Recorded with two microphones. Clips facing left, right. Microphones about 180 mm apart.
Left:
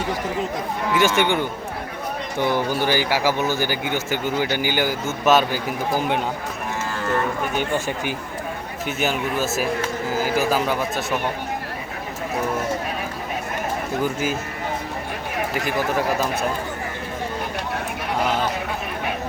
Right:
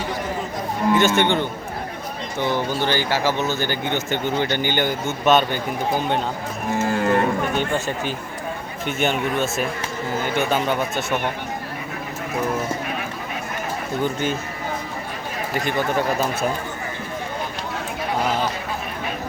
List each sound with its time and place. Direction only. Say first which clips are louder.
0.9 s speech: left 1 dB; 10° left (ahead or behind)
2.6 s speech: left 1 dB; 10° left (ahead or behind)
6.7 s cattle: right 10 dB; 50° right (ahead or behind)
7.5 s speech: right 1 dB; 10° left (ahead or behind)
14.0 s speech: right 2 dB; 5° left (ahead or behind)
15.6 s speech: right 2 dB; 5° left (ahead or behind)